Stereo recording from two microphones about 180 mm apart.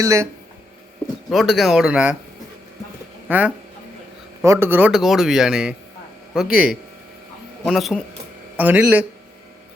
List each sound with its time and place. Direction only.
0.0 s speech: 15° right (ahead or behind)
1.3 s speech: centre (ahead or behind)
3.2 s speech: 10° right (ahead or behind)